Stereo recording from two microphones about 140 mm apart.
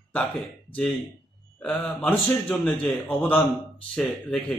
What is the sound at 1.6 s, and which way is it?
A man's voice, 10° left (ahead or behind).